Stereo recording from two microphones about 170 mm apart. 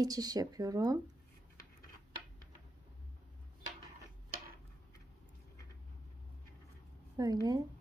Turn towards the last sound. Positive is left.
turn(degrees=-20)  # may be behind; listen again after turning